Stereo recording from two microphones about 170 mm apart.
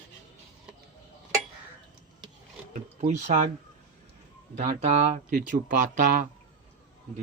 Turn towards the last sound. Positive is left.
turn(degrees=-50)  # may be behind; listen again after turning